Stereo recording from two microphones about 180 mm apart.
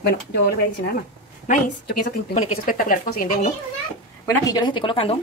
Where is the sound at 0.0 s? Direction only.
65° left (ahead or behind).